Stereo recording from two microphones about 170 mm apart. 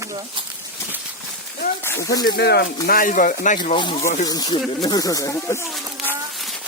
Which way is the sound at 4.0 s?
45° left (ahead or behind).